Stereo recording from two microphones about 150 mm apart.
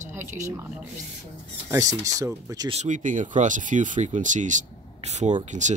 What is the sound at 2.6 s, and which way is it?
Speech, 50° right (ahead or behind).